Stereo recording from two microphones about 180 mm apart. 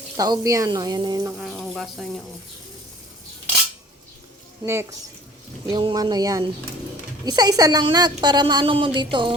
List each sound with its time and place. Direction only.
0.2 s speech: 20° right (ahead or behind)
1.4 s speech: centre (ahead or behind)
4.6 s speech: 15° right (ahead or behind)